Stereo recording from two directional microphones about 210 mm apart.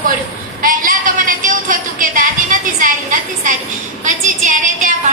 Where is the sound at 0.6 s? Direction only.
40° right (ahead or behind).